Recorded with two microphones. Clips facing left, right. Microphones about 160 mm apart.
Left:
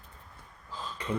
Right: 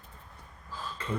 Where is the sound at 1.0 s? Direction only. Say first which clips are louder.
Left 2 dB; 15° left (ahead or behind).